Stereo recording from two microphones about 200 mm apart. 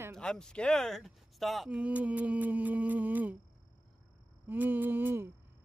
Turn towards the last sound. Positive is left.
turn(degrees=-10)  # may be behind; listen again after turning